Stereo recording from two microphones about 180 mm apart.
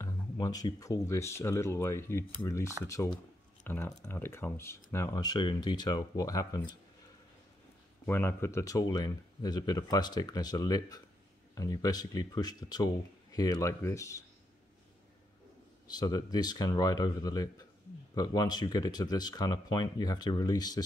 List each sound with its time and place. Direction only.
0.0 s speech: 20° left (ahead or behind)
8.1 s speech: 15° left (ahead or behind)
15.9 s speech: 20° left (ahead or behind)